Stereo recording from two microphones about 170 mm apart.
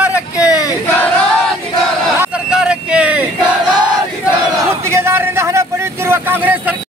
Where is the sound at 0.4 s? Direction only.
20° left (ahead or behind).